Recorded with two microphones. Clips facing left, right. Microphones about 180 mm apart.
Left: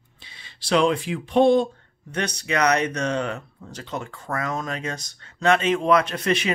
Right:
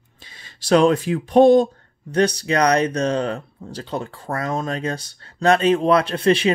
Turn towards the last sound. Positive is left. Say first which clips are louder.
# right 6 dB
turn(degrees=-30)  # may be behind; listen again after turning